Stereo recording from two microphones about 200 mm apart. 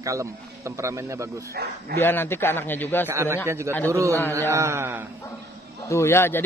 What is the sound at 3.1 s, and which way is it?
A man's voice, 15° right (ahead or behind).